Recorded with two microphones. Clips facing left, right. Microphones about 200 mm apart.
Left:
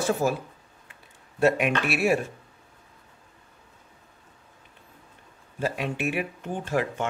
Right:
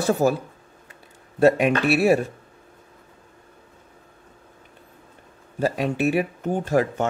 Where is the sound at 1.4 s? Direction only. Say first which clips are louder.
Right 5 dB; 35° right (ahead or behind).